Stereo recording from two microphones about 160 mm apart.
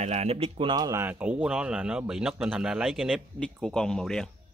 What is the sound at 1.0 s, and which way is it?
Speech, 10° right (ahead or behind).